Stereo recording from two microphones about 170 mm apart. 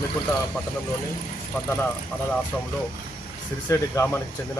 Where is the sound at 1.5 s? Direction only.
10° left (ahead or behind).